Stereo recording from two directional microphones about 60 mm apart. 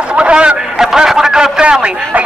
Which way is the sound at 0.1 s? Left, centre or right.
Centre.